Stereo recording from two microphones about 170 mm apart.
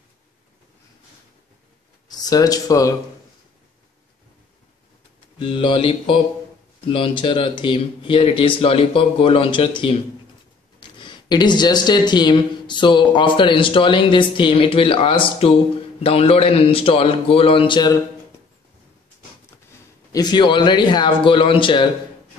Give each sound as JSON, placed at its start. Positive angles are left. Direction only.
{"t": 2.0, "sound": "speech", "side_deg": 20}
{"t": 5.4, "sound": "speech", "side_deg": 30}
{"t": 20.1, "sound": "speech", "side_deg": 25}